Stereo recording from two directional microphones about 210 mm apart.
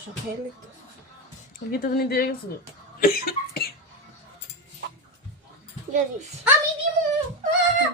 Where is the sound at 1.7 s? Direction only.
45° left (ahead or behind).